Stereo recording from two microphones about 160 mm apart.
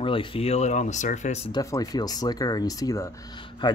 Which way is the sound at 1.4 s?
25° left (ahead or behind).